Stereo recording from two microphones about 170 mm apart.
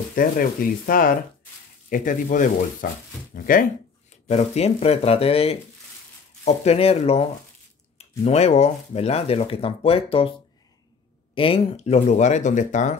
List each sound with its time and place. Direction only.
0.1 s speech: 55° left (ahead or behind)
4.3 s speech: 40° left (ahead or behind)
11.3 s speech: 35° left (ahead or behind)